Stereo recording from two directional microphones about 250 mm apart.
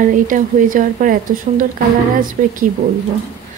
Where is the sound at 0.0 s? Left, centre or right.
Right.